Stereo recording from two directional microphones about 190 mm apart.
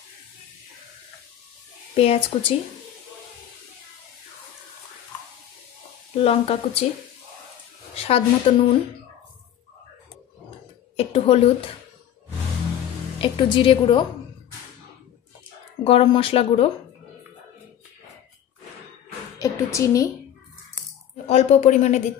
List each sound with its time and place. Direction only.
2.0 s speech: 30° left (ahead or behind)
6.1 s speech: 30° left (ahead or behind)
7.9 s a woman's voice: 30° left (ahead or behind)
11.0 s a woman's voice: 30° left (ahead or behind)
13.2 s speech: 25° left (ahead or behind)
15.8 s speech: 30° left (ahead or behind)
19.3 s a sound: 15° left (ahead or behind)
21.3 s speech: 35° left (ahead or behind)